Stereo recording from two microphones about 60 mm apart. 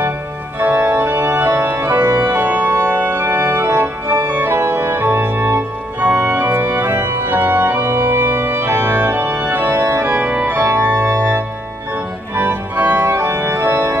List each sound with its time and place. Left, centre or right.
0.6 s organ: right
5.9 s organ: right
6.3 s organ: right